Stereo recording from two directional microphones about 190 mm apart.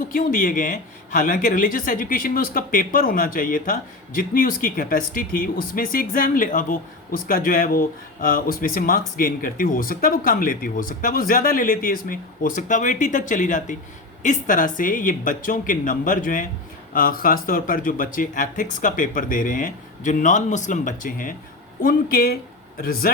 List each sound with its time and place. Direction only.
0.1 s a man's voice: 45° left (ahead or behind)